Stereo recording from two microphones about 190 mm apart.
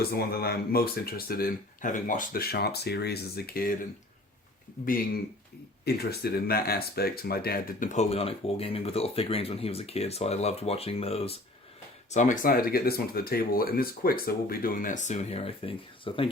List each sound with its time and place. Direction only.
0.0 s speech: 55° left (ahead or behind)
5.8 s speech: 55° left (ahead or behind); by 16.2 s 30° left (ahead or behind)